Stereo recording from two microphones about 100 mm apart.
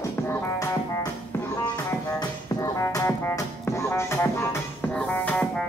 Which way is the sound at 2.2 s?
35° left (ahead or behind).